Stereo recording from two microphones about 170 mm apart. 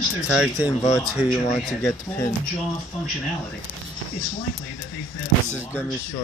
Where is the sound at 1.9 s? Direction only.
15° left (ahead or behind).